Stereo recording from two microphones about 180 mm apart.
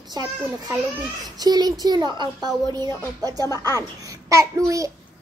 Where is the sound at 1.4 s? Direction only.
20° right (ahead or behind).